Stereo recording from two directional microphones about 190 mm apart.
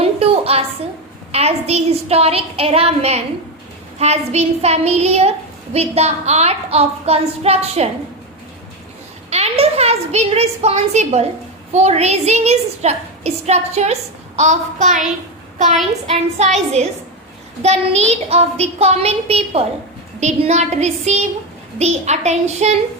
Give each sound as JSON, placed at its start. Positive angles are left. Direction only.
{"t": 0.0, "sound": "a sound", "side_deg": -30}
{"t": 1.3, "sound": "a woman's voice", "side_deg": -35}
{"t": 9.3, "sound": "a woman's voice", "side_deg": -35}
{"t": 16.4, "sound": "a woman's voice", "side_deg": -35}